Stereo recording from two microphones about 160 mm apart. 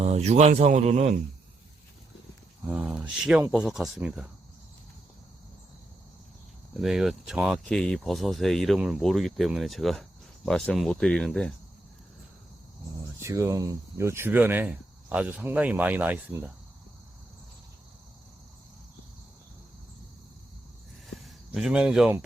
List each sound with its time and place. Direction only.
0.0 s speech: 45° right (ahead or behind)
2.6 s speech: 5° right (ahead or behind)
6.7 s speech: centre (ahead or behind)
13.1 s speech: 20° right (ahead or behind)
21.2 s speech: 5° right (ahead or behind)